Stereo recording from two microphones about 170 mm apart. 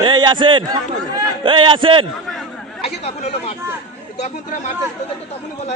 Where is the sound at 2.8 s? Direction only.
35° left (ahead or behind).